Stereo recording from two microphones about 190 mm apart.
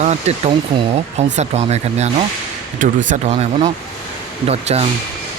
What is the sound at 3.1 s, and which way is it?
Speech, 35° right (ahead or behind).